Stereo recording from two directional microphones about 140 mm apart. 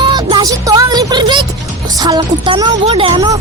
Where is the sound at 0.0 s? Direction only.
30° right (ahead or behind).